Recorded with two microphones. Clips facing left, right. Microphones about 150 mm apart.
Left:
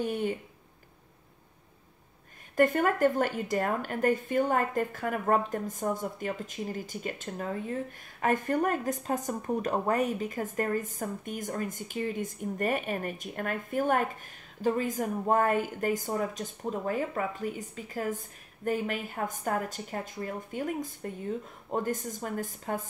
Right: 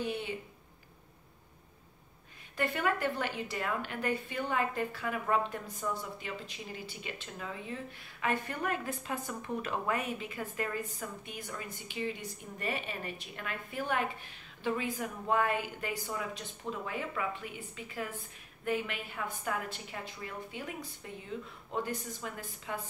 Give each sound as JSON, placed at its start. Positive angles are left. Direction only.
{"t": 0.0, "sound": "speech", "side_deg": 45}
{"t": 2.5, "sound": "a woman's voice", "side_deg": 45}